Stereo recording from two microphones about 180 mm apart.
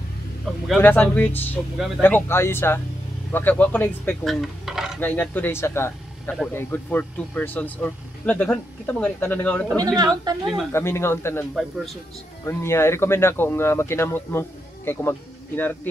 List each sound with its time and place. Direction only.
0.7 s speech: 10° left (ahead or behind)
5.0 s speech: 10° left (ahead or behind)
9.9 s speech: 20° right (ahead or behind)
10.7 s speech: 15° left (ahead or behind)
12.4 s speech: 15° left (ahead or behind)